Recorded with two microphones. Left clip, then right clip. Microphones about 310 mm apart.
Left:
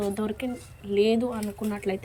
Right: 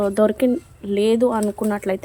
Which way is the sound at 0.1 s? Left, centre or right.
Centre.